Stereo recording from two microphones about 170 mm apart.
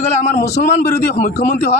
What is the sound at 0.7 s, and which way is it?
Speech, 40° left (ahead or behind).